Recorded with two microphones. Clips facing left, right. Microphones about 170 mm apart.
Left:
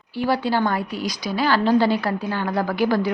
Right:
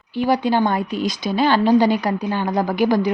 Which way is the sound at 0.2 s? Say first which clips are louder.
Right 3 dB; 20° right (ahead or behind).